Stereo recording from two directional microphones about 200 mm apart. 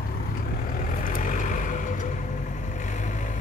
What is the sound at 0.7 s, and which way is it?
Vehicle, 40° left (ahead or behind).